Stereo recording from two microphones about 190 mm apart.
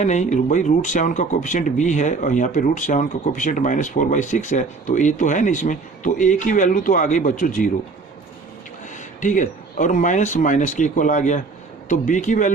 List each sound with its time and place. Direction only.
0.0 s speech: 40° left (ahead or behind)
8.9 s speech: 40° left (ahead or behind)